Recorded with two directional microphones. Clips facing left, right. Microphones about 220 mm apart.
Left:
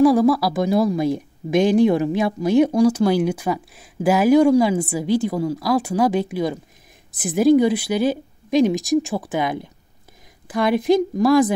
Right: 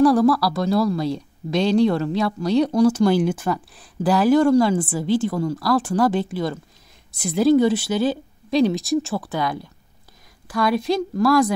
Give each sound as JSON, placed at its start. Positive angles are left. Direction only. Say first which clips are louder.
{"t": 0.0, "sound": "speech", "louder": "left 1 dB", "side_deg": 10}